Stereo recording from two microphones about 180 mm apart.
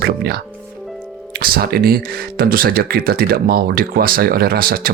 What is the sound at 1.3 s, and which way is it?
Speech, 55° right (ahead or behind).